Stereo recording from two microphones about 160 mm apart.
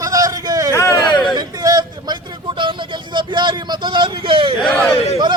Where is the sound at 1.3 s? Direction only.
25° right (ahead or behind).